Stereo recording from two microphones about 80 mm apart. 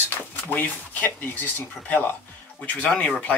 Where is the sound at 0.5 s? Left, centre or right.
Left.